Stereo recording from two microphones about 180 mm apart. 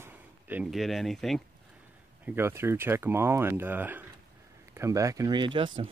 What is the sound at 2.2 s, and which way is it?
Speech, 10° right (ahead or behind).